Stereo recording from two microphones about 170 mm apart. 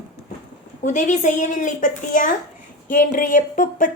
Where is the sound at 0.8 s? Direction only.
45° left (ahead or behind).